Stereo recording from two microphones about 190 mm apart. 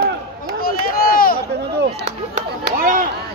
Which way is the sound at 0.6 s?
50° left (ahead or behind).